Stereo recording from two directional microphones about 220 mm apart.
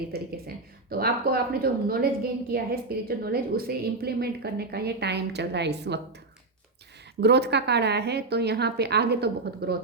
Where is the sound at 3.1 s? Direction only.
45° right (ahead or behind).